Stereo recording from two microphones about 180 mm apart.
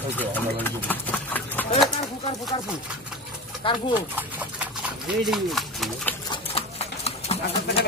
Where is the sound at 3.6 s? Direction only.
30° left (ahead or behind).